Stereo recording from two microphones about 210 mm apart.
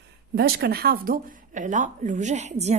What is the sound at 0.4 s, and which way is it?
A woman's voice, 50° right (ahead or behind).